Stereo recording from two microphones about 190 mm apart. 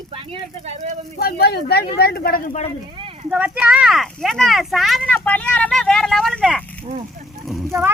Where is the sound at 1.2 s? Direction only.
55° left (ahead or behind).